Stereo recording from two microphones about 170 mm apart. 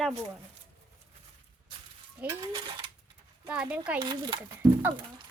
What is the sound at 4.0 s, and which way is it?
Speech, 25° right (ahead or behind).